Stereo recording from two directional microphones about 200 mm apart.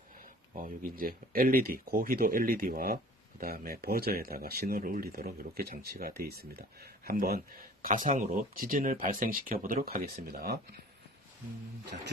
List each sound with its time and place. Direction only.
0.5 s speech: 45° right (ahead or behind)
11.9 s speech: 45° right (ahead or behind)